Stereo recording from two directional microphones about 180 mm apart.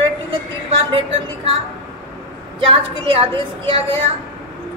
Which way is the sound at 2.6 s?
30° right (ahead or behind).